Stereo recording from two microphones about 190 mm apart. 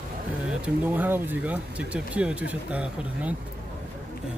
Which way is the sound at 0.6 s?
10° right (ahead or behind).